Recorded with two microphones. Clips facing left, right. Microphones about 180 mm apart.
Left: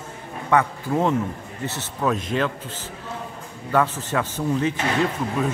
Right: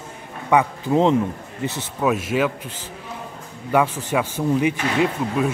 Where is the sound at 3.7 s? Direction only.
15° right (ahead or behind).